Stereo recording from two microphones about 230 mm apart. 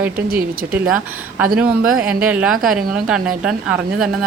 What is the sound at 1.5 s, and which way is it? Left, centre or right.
A woman's voice, centre.